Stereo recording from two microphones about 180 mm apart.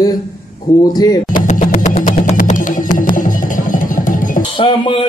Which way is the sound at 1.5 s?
50° left (ahead or behind).